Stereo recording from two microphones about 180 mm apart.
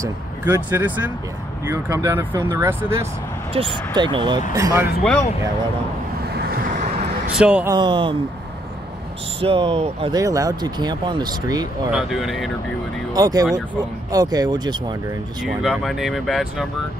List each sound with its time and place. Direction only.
0.0 s speech: 10° right (ahead or behind)
3.5 s speech: 25° right (ahead or behind)
6.2 s vehicle: 65° right (ahead or behind)
7.3 s speech: 5° right (ahead or behind)
7.7 s speech: 25° right (ahead or behind)
9.4 s speech: 30° right (ahead or behind)
10.1 s speech: 20° right (ahead or behind)
11.9 s speech: centre (ahead or behind)
13.1 s speech: 20° right (ahead or behind)
15.4 s speech: centre (ahead or behind)